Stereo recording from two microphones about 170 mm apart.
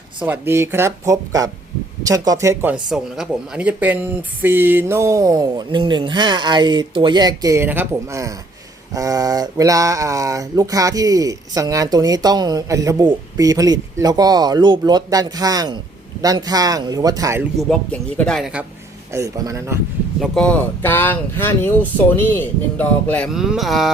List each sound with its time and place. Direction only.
0.3 s speech: 15° right (ahead or behind)
2.9 s speech: 5° right (ahead or behind); by 17.4 s 20° right (ahead or behind)
18.2 s speech: 5° left (ahead or behind)
19.1 s speech: 20° right (ahead or behind)
20.2 s speech: 5° left (ahead or behind)